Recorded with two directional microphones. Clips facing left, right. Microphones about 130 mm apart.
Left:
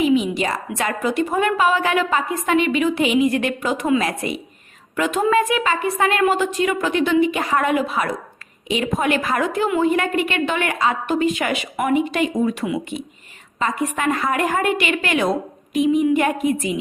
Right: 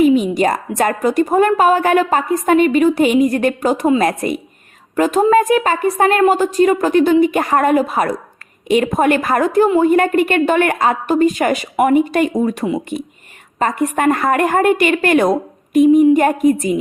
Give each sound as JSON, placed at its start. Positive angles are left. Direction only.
{"t": 0.0, "sound": "a woman's voice", "side_deg": -45}